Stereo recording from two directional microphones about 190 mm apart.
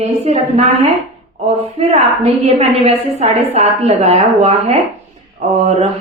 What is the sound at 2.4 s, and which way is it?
A woman's voice, 35° right (ahead or behind).